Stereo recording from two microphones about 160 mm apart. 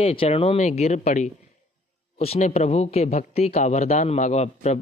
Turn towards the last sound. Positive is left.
turn(degrees=45)  # may be behind; listen again after turning